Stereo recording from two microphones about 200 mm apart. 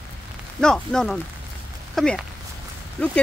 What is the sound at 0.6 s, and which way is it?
Speech, 5° left (ahead or behind).